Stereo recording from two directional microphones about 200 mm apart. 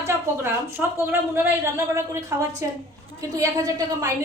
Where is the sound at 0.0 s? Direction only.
10° right (ahead or behind).